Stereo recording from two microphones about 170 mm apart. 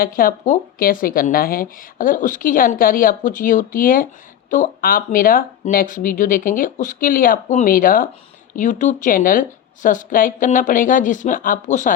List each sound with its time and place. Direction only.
0.0 s speech: 55° left (ahead or behind)